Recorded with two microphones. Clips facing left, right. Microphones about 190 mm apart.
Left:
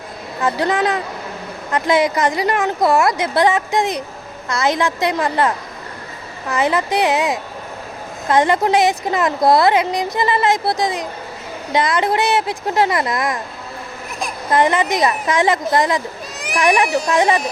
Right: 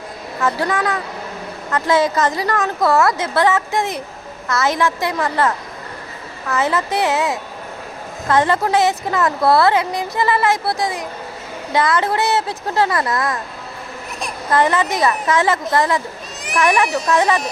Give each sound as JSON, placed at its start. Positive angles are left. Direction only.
{"t": 0.3, "sound": "speech", "side_deg": 15}
{"t": 14.5, "sound": "speech", "side_deg": 15}